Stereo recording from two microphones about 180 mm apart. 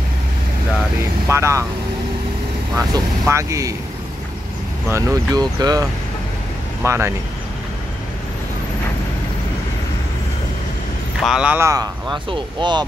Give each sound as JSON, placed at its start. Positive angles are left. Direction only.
{"t": 1.3, "sound": "speech", "side_deg": -15}
{"t": 2.9, "sound": "speech", "side_deg": -15}
{"t": 4.8, "sound": "speech", "side_deg": -15}
{"t": 11.1, "sound": "speech", "side_deg": 0}